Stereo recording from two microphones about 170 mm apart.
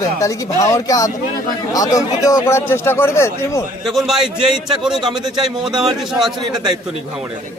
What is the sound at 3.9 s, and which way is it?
Speech, centre (ahead or behind).